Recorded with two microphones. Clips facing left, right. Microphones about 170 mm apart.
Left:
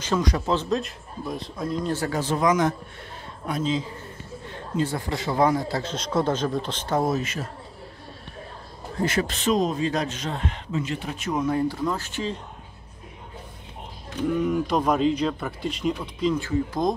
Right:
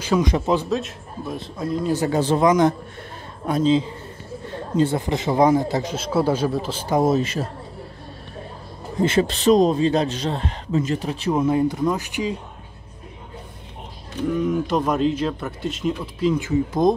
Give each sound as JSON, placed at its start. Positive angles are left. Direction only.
{"t": 0.0, "sound": "speech", "side_deg": -10}
{"t": 0.7, "sound": "speech", "side_deg": 0}
{"t": 1.9, "sound": "a man's voice", "side_deg": -20}
{"t": 5.9, "sound": "speech", "side_deg": -5}
{"t": 7.0, "sound": "a man's voice", "side_deg": -25}
{"t": 8.9, "sound": "a man's voice", "side_deg": -25}
{"t": 14.3, "sound": "speech", "side_deg": 0}
{"t": 16.3, "sound": "a man's voice", "side_deg": -20}